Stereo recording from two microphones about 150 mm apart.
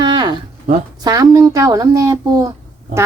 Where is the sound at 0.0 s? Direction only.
30° right (ahead or behind).